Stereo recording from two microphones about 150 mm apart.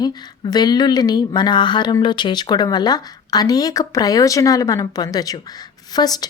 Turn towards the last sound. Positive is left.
turn(degrees=25)  # may be behind; listen again after turning